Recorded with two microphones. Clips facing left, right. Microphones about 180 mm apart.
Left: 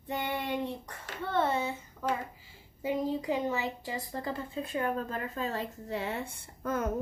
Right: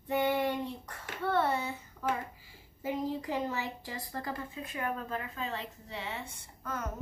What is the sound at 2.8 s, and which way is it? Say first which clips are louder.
A woman's voice: left 3 dB; 20° left (ahead or behind).